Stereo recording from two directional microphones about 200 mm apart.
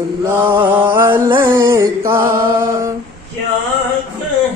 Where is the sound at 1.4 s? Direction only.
15° right (ahead or behind).